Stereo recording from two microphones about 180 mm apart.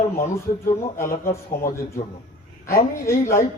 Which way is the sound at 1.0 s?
50° left (ahead or behind).